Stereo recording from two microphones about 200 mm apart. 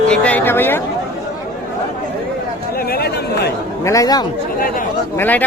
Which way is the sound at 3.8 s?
15° left (ahead or behind).